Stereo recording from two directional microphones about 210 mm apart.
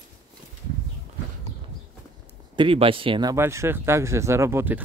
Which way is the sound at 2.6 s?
25° right (ahead or behind).